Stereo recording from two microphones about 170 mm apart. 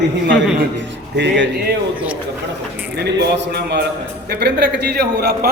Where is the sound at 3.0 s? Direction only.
80° right.